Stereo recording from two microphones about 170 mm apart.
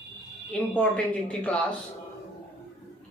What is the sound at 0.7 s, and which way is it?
Speech, 5° left (ahead or behind).